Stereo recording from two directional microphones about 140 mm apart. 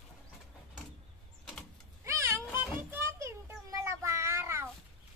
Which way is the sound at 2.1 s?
20° right (ahead or behind).